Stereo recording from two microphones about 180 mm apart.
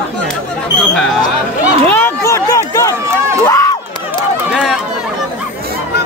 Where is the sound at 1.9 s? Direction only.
15° left (ahead or behind).